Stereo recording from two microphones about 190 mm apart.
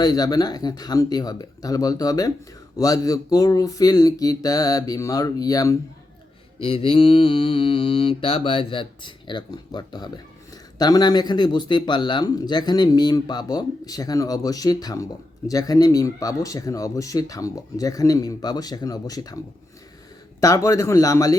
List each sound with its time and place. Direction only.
0.0 s speech: 20° left (ahead or behind)
20.4 s a man's voice: 15° left (ahead or behind)